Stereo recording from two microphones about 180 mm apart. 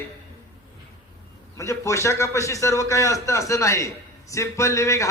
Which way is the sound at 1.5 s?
15° left (ahead or behind).